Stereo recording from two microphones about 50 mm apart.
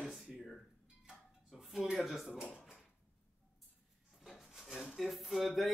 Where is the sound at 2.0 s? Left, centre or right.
Centre.